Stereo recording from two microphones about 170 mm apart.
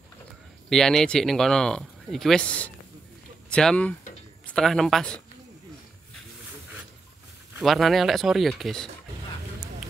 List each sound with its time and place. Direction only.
0.7 s speech: centre (ahead or behind)
7.6 s speech: centre (ahead or behind)